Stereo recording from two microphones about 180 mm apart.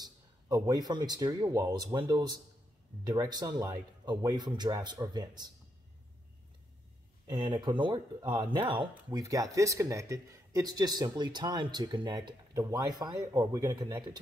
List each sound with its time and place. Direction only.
0.0 s speech: 20° right (ahead or behind)
7.2 s speech: 25° right (ahead or behind)